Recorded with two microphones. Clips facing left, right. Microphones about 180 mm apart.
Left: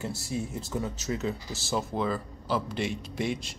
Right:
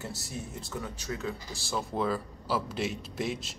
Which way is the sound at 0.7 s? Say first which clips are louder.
Left 5 dB; 25° left (ahead or behind).